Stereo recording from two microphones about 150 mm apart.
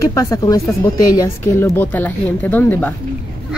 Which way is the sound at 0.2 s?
25° left (ahead or behind).